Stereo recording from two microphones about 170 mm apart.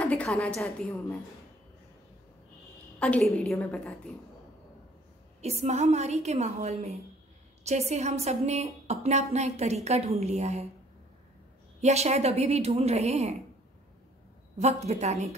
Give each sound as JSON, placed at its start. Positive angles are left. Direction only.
{"t": 0.0, "sound": "a sound", "side_deg": 5}
{"t": 0.6, "sound": "a woman's voice", "side_deg": 5}
{"t": 3.0, "sound": "a woman's voice", "side_deg": 5}
{"t": 5.4, "sound": "a woman's voice", "side_deg": -40}
{"t": 11.8, "sound": "a woman's voice", "side_deg": -40}
{"t": 14.6, "sound": "a woman's voice", "side_deg": -40}